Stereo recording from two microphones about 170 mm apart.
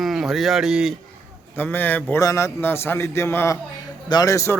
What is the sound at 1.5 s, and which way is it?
A man's voice, 10° left (ahead or behind).